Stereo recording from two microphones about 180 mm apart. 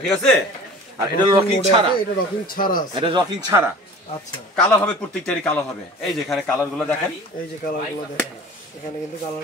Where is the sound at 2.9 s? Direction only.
25° right (ahead or behind).